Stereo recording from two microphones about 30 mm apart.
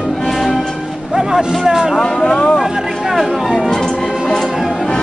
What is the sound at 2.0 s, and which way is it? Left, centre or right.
Speech, left.